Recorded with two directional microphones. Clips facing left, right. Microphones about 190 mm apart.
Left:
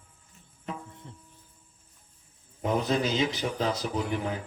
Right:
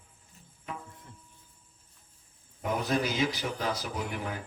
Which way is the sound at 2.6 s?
25° left (ahead or behind).